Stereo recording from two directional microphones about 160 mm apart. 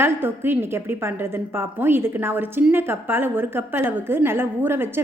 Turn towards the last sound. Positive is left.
turn(degrees=-15)  # may be behind; listen again after turning